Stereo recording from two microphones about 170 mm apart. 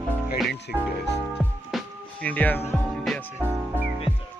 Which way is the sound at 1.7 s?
Centre (ahead or behind).